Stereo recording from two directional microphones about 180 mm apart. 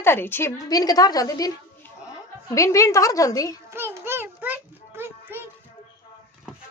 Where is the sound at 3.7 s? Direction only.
15° right (ahead or behind).